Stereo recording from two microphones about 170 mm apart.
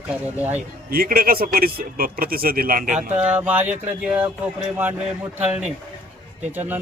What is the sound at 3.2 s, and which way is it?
Speech, 10° right (ahead or behind).